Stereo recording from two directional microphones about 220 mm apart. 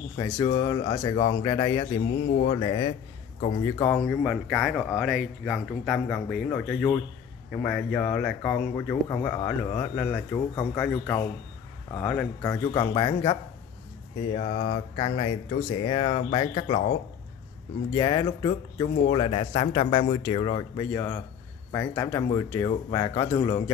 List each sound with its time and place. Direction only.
0.5 s speech: 20° left (ahead or behind)
2.2 s speech: 40° left (ahead or behind)
2.5 s speech: 20° left (ahead or behind)
3.9 s speech: 5° left (ahead or behind)
14.3 s speech: 35° left (ahead or behind)
15.0 s speech: 25° left (ahead or behind)
17.9 s speech: 15° left (ahead or behind)